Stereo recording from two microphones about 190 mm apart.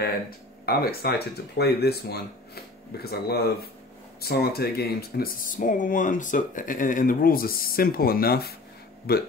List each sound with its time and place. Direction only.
0.7 s speech: 55° left (ahead or behind)